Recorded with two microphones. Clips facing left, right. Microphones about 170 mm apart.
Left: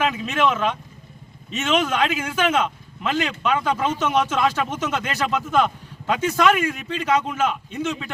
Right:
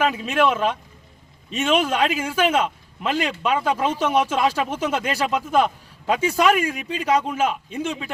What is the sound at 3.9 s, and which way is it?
Speech, 30° right (ahead or behind).